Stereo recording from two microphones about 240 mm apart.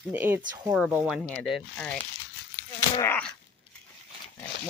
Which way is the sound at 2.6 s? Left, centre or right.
Centre.